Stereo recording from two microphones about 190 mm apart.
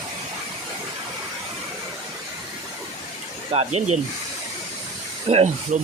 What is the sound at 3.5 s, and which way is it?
Speech, 35° right (ahead or behind).